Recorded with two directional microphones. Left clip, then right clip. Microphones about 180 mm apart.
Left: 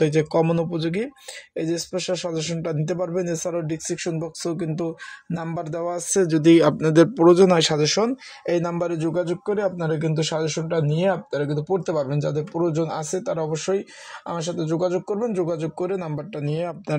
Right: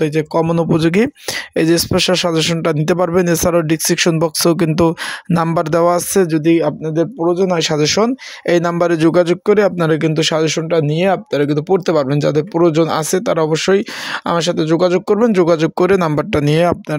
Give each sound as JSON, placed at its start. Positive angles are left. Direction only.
{"t": 0.0, "sound": "speech", "side_deg": -20}
{"t": 0.7, "sound": "speech", "side_deg": -35}
{"t": 6.1, "sound": "speech", "side_deg": -20}
{"t": 6.4, "sound": "speech", "side_deg": -5}
{"t": 7.4, "sound": "a man's voice", "side_deg": -10}
{"t": 7.7, "sound": "speech", "side_deg": -25}